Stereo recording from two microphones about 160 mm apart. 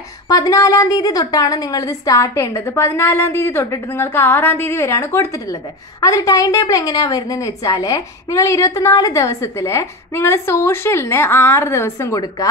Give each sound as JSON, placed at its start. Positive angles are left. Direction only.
{"t": 0.3, "sound": "a woman's voice", "side_deg": 20}